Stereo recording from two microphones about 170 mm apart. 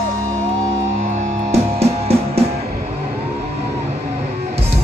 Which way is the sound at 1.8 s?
35° right (ahead or behind).